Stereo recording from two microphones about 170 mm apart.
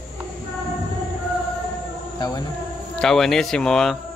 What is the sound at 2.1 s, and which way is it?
Speech, 20° left (ahead or behind).